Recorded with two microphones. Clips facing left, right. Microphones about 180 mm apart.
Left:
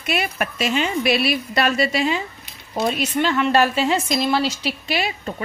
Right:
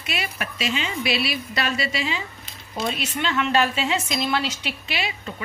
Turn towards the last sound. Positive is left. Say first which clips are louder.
# left 5 dB
turn(degrees=45)  # may be behind; listen again after turning